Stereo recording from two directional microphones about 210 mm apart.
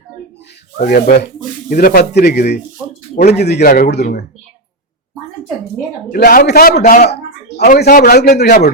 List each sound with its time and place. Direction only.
0.8 s a man's voice: 40° left (ahead or behind)
6.1 s a man's voice: 45° left (ahead or behind)
7.6 s a man's voice: 45° left (ahead or behind)